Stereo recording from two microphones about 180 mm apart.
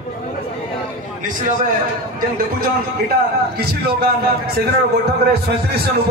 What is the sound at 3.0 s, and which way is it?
A man's voice, 60° right (ahead or behind).